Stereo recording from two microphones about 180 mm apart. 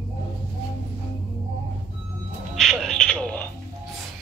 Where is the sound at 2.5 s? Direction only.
Centre (ahead or behind).